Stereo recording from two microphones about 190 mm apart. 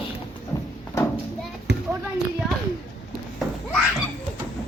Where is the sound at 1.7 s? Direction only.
60° right (ahead or behind).